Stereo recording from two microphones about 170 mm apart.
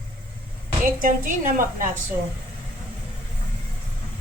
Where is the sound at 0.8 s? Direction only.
55° right (ahead or behind).